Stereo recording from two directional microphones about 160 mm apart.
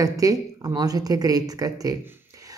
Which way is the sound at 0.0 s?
20° right (ahead or behind).